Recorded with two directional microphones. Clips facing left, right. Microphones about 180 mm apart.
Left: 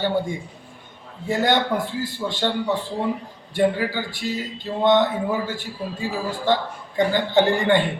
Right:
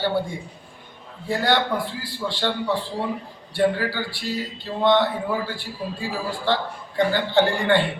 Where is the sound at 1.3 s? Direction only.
20° left (ahead or behind).